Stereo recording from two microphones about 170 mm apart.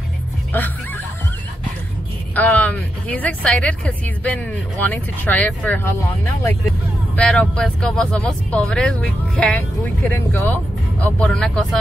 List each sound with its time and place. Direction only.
2.3 s speech: 10° left (ahead or behind)